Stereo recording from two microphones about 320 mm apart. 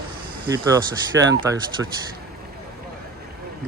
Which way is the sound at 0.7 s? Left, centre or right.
Centre.